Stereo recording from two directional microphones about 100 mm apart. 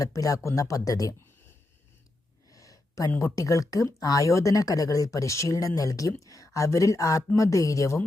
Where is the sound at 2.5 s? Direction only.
35° left (ahead or behind).